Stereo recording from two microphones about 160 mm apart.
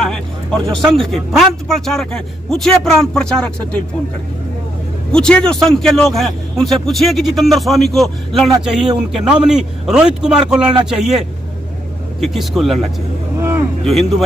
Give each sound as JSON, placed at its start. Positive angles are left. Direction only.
{"t": 0.0, "sound": "a man's voice", "side_deg": 5}
{"t": 5.1, "sound": "a man's voice", "side_deg": 5}
{"t": 13.4, "sound": "vehicle", "side_deg": -15}
{"t": 13.8, "sound": "a man's voice", "side_deg": 0}